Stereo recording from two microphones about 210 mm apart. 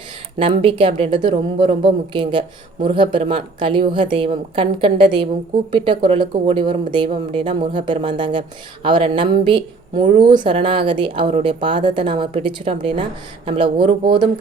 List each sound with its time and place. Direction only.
0.3 s speech: 25° right (ahead or behind)